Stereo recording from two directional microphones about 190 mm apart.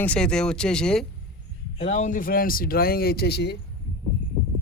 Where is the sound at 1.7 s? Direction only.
35° left (ahead or behind); by 3.5 s 60° left (ahead or behind).